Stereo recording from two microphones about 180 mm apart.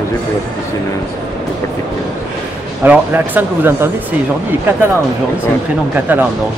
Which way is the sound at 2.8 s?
10° right (ahead or behind).